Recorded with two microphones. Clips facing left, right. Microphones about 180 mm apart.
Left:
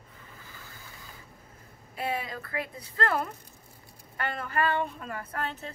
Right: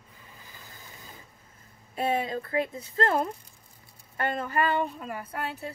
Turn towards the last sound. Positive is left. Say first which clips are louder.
# right 1 dB
turn(degrees=-10)  # may be behind; listen again after turning